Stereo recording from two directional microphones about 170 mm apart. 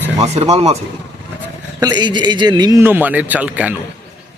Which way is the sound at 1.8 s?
25° right (ahead or behind).